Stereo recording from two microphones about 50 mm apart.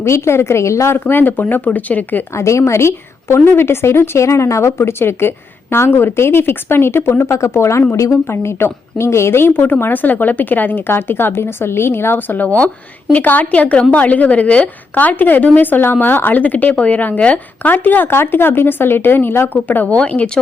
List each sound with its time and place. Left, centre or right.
0.0 s a woman's voice: left
0.9 s a woman's voice: left
2.3 s a woman's voice: left
4.9 s a woman's voice: left
7.9 s a woman's voice: left
19.5 s a woman's voice: left
20.0 s a woman's voice: left